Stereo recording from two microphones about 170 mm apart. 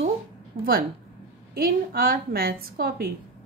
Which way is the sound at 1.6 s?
60° right (ahead or behind).